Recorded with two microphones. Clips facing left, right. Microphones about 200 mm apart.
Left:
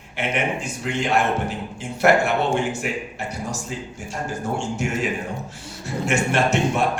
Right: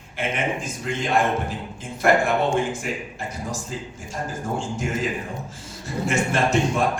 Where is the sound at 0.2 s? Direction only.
70° left (ahead or behind).